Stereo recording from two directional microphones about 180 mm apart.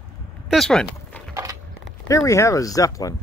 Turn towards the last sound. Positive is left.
turn(degrees=20)  # may be behind; listen again after turning